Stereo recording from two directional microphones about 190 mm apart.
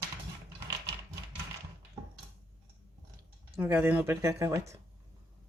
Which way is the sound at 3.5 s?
10° right (ahead or behind).